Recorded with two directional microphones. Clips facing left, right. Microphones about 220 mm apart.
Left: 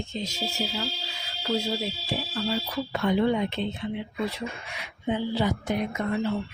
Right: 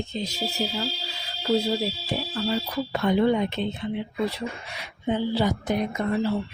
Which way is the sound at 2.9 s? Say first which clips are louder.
Right 2 dB; 40° right (ahead or behind).